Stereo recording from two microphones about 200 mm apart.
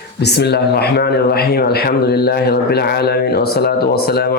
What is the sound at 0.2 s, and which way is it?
A man's voice, 55° left (ahead or behind).